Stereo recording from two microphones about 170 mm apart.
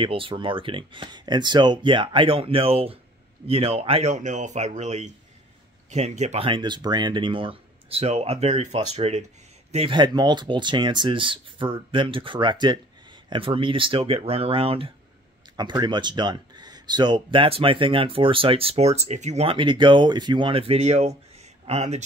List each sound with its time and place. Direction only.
0.0 s speech: 30° right (ahead or behind)